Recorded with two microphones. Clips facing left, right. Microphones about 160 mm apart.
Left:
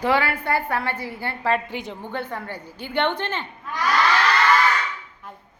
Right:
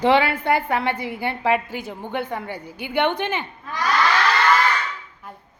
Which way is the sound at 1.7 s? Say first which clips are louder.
Even; 5° right (ahead or behind).